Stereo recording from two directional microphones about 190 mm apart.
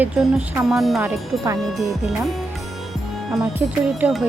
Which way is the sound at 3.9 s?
5° right (ahead or behind).